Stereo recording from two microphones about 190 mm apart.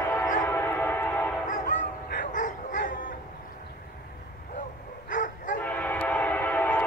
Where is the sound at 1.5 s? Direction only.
45° left (ahead or behind).